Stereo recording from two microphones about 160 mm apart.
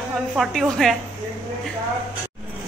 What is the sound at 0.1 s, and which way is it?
Speech, centre (ahead or behind).